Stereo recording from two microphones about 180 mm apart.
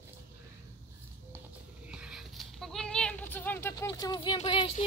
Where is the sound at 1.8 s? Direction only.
5° right (ahead or behind); by 4.4 s 25° left (ahead or behind).